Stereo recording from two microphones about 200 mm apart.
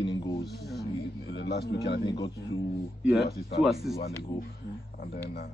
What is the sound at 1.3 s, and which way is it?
Speech, 55° left (ahead or behind).